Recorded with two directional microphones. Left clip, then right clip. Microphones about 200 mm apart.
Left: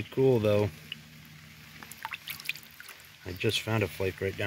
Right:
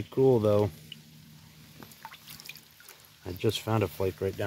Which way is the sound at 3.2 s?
10° right (ahead or behind).